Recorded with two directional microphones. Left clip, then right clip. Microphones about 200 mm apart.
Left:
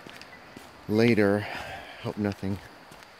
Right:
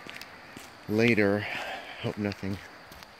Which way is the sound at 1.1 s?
15° left (ahead or behind).